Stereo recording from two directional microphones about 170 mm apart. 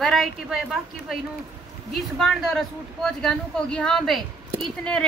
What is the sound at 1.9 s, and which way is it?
Speech, centre (ahead or behind).